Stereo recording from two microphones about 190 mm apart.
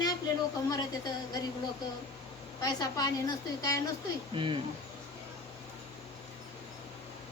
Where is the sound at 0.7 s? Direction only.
20° left (ahead or behind).